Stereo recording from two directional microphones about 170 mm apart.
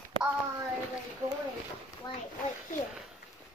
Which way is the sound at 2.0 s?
25° left (ahead or behind).